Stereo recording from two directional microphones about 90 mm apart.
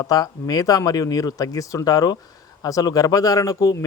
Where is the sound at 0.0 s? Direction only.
45° left (ahead or behind).